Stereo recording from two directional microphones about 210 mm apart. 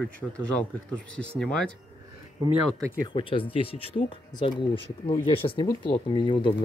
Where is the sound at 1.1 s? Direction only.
5° left (ahead or behind).